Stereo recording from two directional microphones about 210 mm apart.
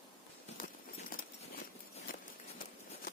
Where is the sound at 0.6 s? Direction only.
40° left (ahead or behind).